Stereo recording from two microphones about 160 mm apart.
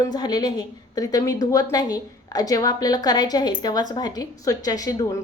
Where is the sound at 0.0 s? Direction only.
25° left (ahead or behind).